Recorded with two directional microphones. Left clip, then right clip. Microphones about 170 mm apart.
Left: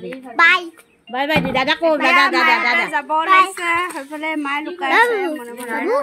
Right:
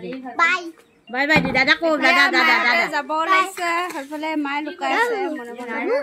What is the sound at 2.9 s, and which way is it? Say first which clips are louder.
Speech: left 4 dB; 10° right (ahead or behind).